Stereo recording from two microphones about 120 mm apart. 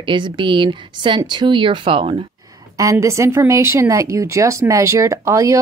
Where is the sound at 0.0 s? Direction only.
40° right (ahead or behind).